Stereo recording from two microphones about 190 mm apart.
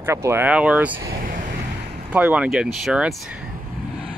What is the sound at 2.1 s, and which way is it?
Speech, 5° right (ahead or behind).